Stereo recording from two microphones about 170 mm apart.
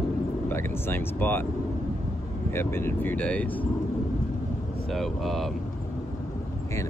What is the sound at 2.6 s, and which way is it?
Speech, 15° left (ahead or behind).